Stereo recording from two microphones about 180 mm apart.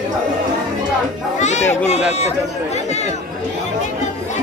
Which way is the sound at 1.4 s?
40° left (ahead or behind).